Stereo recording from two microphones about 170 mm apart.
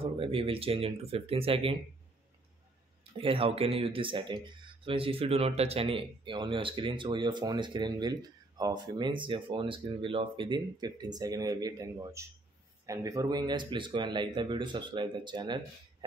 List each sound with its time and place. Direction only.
0.0 s speech: 35° right (ahead or behind)
3.0 s speech: 35° right (ahead or behind)